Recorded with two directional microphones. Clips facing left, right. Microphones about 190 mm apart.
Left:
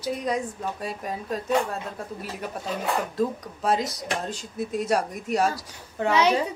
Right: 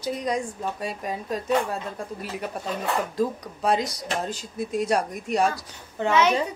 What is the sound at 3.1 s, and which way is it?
Speech, centre (ahead or behind).